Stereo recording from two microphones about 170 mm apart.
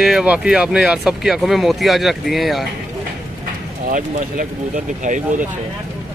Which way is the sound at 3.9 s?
50° right (ahead or behind).